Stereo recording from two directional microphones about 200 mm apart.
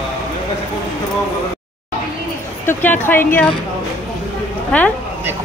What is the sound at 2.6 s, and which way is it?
Speech, 10° left (ahead or behind).